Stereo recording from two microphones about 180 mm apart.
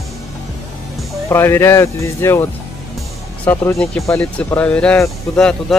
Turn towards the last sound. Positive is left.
turn(degrees=5)  # may be behind; listen again after turning